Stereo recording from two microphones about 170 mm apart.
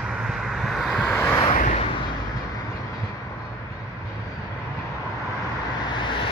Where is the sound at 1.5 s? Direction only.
50° left (ahead or behind).